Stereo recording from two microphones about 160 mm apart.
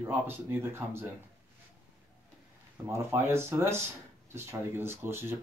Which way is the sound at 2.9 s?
15° right (ahead or behind).